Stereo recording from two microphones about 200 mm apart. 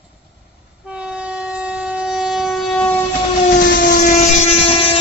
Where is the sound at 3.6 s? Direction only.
40° left (ahead or behind).